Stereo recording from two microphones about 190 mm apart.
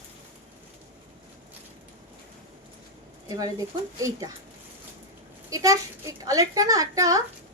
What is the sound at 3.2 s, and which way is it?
Speech, 20° right (ahead or behind).